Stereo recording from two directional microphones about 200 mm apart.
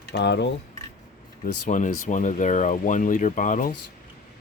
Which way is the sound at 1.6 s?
40° left (ahead or behind).